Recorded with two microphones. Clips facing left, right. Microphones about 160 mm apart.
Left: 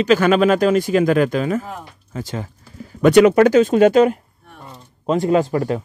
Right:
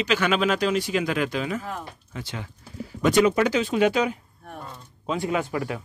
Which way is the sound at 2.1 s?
40° left (ahead or behind).